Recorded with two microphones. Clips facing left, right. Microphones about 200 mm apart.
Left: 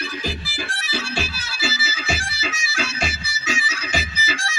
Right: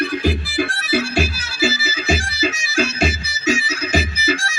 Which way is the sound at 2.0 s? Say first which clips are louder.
Right 9 dB; 55° right (ahead or behind).